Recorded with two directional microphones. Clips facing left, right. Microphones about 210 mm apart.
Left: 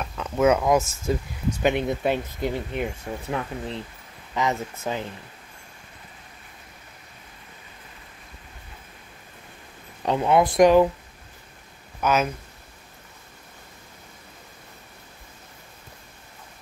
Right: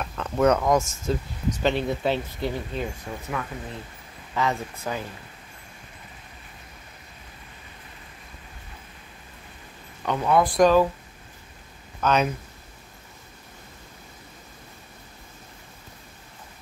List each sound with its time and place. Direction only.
0.0 s speech: 5° left (ahead or behind)
3.3 s speech: 25° left (ahead or behind)
10.0 s speech: 25° left (ahead or behind)
12.0 s speech: 5° left (ahead or behind)